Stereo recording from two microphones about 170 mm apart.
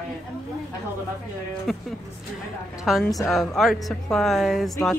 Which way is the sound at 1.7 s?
Centre (ahead or behind).